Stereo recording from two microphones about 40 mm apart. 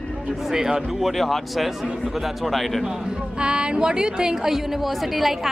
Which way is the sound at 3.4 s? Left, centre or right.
Right.